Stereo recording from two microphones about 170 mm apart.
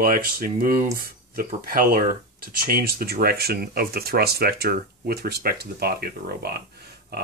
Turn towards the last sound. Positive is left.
turn(degrees=-70)  # may be behind; listen again after turning